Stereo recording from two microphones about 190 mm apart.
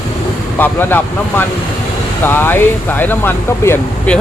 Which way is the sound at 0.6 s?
10° left (ahead or behind).